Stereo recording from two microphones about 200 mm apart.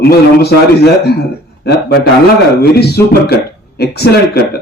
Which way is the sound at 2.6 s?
50° left (ahead or behind).